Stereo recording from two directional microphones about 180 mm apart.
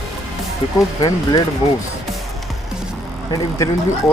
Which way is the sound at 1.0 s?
20° left (ahead or behind).